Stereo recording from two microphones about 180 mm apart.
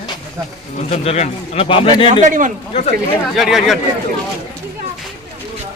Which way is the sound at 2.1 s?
45° right (ahead or behind).